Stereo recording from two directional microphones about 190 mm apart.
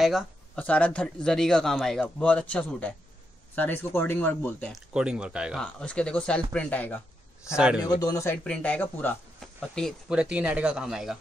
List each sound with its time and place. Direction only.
0.0 s speech: 5° left (ahead or behind)
4.9 s speech: 5° right (ahead or behind)
7.5 s speech: 5° right (ahead or behind)
8.0 s speech: 15° left (ahead or behind); by 11.1 s 5° right (ahead or behind)